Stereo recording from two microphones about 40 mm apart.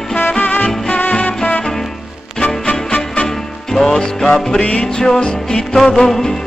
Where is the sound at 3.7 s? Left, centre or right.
Centre.